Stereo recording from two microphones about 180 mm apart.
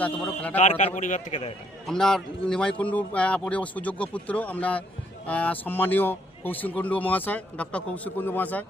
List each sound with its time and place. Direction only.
0.0 s speech: 10° left (ahead or behind)
0.5 s a man's voice: 40° left (ahead or behind)
1.9 s speech: 5° left (ahead or behind)